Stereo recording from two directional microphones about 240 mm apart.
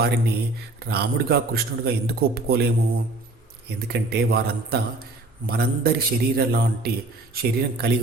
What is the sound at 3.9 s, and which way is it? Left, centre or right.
Speech, right.